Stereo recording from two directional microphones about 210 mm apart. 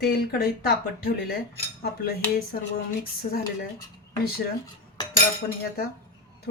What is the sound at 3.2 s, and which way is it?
Dishes, 40° left (ahead or behind).